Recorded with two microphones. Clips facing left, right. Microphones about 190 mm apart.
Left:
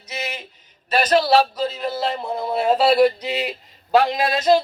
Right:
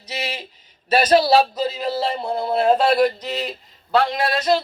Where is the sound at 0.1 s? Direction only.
35° right (ahead or behind).